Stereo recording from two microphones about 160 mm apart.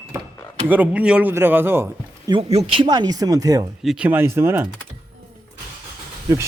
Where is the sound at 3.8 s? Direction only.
5° right (ahead or behind).